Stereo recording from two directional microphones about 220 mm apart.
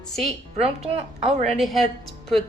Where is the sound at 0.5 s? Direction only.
30° right (ahead or behind).